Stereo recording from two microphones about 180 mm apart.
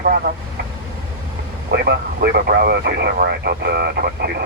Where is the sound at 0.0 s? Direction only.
55° right (ahead or behind).